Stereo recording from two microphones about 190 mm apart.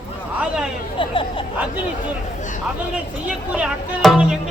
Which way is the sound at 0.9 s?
30° left (ahead or behind).